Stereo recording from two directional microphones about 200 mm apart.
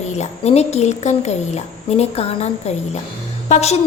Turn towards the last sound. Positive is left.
turn(degrees=35)  # may be behind; listen again after turning